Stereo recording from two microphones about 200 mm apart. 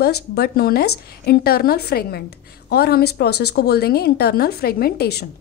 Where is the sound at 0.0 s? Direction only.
50° left (ahead or behind).